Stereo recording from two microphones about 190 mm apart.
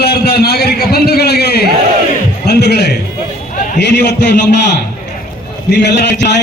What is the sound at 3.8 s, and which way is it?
A man's voice, 65° left (ahead or behind).